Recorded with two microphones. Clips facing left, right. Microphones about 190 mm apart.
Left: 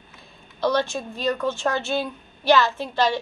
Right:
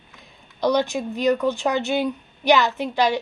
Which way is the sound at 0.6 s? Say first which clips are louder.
Right 2 dB; 15° right (ahead or behind).